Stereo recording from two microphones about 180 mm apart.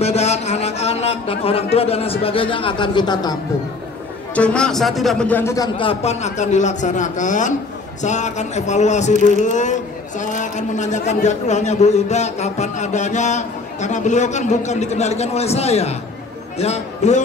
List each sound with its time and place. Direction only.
0.0 s a man's voice: 35° left (ahead or behind)
4.4 s a man's voice: 5° left (ahead or behind)
5.8 s a man's voice: 35° left (ahead or behind)